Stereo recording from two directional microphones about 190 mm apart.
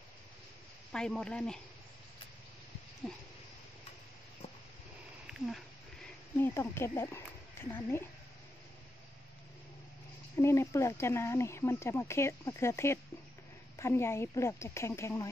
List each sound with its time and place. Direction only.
0.9 s speech: 5° left (ahead or behind)
3.0 s speech: 5° left (ahead or behind)
6.3 s speech: 10° left (ahead or behind)
10.3 s speech: 15° left (ahead or behind)